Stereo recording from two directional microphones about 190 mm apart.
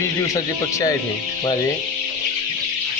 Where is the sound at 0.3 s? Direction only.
15° left (ahead or behind).